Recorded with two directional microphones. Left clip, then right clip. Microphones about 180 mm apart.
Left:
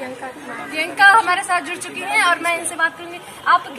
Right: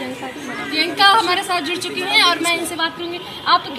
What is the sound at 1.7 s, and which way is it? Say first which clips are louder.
Speech: right 4 dB; 40° left (ahead or behind).